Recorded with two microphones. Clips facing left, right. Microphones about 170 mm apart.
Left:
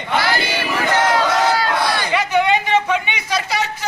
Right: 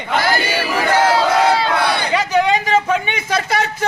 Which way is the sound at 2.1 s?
40° right (ahead or behind).